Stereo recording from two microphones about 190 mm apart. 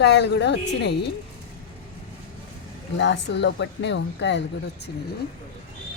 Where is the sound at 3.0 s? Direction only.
65° left (ahead or behind).